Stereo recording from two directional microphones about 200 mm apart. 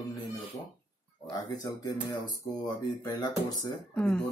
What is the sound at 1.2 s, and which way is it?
Speech, 20° left (ahead or behind).